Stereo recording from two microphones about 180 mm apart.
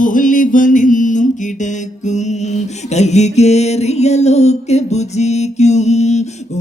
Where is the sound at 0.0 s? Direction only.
45° left (ahead or behind).